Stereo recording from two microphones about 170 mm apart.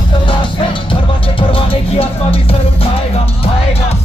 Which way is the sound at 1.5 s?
35° left (ahead or behind).